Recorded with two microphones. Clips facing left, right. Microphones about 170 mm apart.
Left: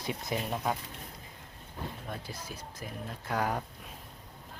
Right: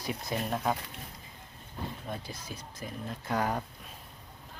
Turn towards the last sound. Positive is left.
turn(degrees=5)  # may be behind; listen again after turning